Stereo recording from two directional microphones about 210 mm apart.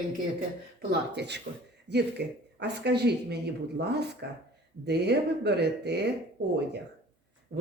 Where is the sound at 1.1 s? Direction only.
55° right (ahead or behind).